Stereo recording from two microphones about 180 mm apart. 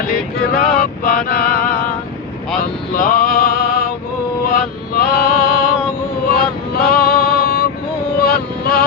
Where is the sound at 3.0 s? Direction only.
55° left (ahead or behind).